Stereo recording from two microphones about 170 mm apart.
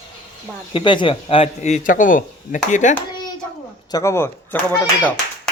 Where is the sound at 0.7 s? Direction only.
30° left (ahead or behind); by 2.9 s 50° left (ahead or behind).